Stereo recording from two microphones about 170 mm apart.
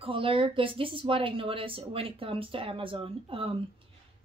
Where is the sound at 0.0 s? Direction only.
30° right (ahead or behind).